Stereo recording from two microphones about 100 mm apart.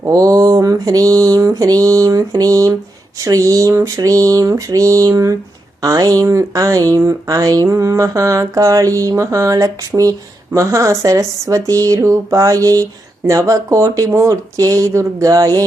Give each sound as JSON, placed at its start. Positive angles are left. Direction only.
{"t": 0.0, "sound": "speech", "side_deg": -35}